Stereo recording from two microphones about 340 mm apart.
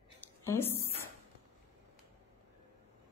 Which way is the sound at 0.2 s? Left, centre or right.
Centre.